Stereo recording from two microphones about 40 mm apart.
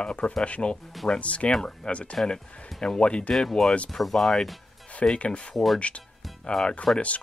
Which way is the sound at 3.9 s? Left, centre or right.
Centre.